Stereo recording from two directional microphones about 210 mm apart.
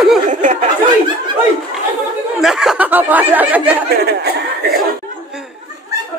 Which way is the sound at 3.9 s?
50° right (ahead or behind).